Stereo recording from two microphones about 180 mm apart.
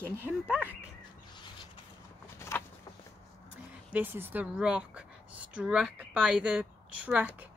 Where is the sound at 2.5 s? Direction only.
15° left (ahead or behind).